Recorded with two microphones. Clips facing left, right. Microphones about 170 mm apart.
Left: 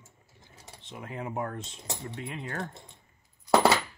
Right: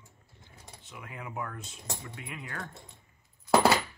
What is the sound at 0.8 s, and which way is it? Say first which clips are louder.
Speech: left 6 dB; 35° left (ahead or behind).